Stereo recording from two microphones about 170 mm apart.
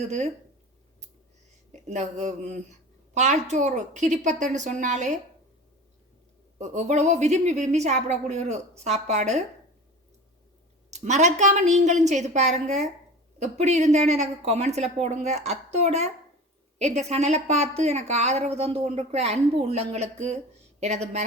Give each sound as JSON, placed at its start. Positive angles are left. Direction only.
{"t": 1.7, "sound": "a woman's voice", "side_deg": -45}
{"t": 6.6, "sound": "a woman's voice", "side_deg": -40}
{"t": 10.9, "sound": "a woman's voice", "side_deg": -45}